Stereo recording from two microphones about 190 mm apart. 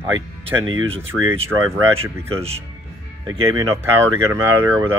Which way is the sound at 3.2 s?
20° right (ahead or behind).